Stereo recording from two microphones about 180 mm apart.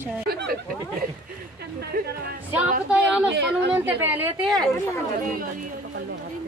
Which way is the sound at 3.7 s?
10° right (ahead or behind).